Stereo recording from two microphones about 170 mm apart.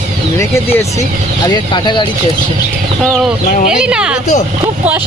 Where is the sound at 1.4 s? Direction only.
25° left (ahead or behind).